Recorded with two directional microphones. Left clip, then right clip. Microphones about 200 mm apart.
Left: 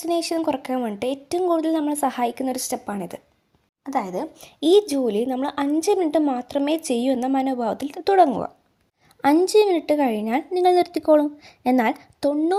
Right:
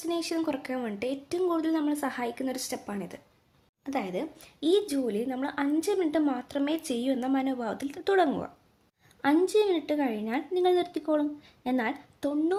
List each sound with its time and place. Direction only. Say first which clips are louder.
0.0 s speech: left 8 dB; 30° left (ahead or behind)
3.8 s a woman's voice: left 7 dB; 20° left (ahead or behind)